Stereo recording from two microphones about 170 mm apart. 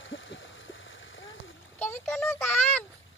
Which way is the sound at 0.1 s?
90° left.